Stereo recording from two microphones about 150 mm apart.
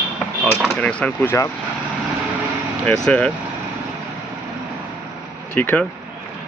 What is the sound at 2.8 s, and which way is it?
Speech, 5° left (ahead or behind).